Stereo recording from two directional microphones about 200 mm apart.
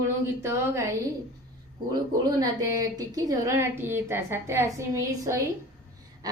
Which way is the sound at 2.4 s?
20° right (ahead or behind).